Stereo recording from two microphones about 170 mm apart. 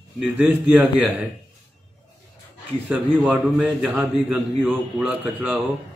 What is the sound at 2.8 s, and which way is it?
Speech, 5° right (ahead or behind).